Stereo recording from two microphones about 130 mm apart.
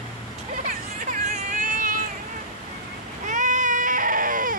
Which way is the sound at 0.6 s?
85° right.